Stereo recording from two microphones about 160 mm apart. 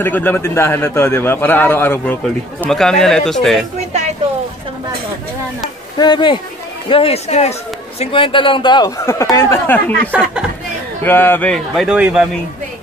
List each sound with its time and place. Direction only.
0.0 s a man's voice: 10° left (ahead or behind)
5.9 s a man's voice: 30° left (ahead or behind); by 12.3 s 5° right (ahead or behind)